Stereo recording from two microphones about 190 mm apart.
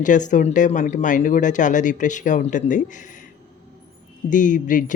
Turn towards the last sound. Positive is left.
turn(degrees=45)  # may be behind; listen again after turning